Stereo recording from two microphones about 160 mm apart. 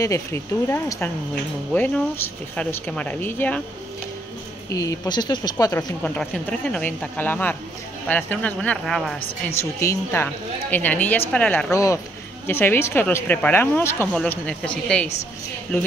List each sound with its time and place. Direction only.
0.0 s speech: 15° left (ahead or behind)
4.6 s speech: 20° left (ahead or behind)
6.0 s speech: 5° left (ahead or behind)
9.6 s speech: 15° left (ahead or behind)
11.7 s speech: 20° left (ahead or behind)